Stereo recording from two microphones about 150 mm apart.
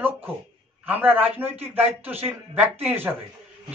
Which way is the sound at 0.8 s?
10° right (ahead or behind).